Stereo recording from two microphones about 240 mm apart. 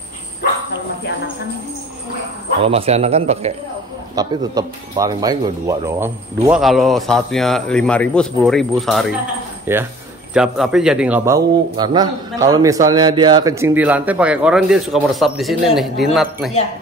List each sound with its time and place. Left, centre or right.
2.6 s speech: right
4.1 s speech: centre
9.7 s a man's voice: centre